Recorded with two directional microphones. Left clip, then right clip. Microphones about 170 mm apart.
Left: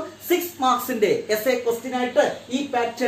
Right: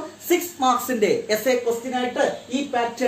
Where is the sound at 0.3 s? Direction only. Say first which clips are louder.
Right 1 dB; 20° right (ahead or behind).